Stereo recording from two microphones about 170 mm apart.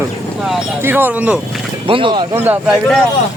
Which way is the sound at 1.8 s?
30° right (ahead or behind).